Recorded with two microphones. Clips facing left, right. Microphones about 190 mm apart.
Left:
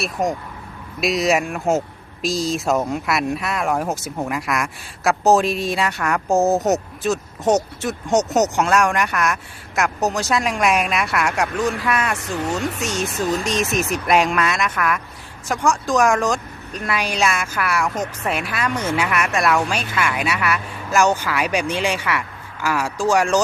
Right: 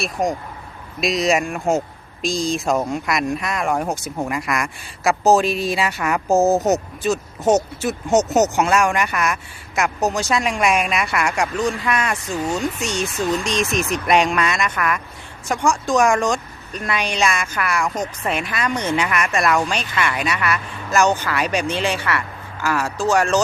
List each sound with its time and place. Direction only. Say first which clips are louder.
0.0 s speech: even; centre (ahead or behind)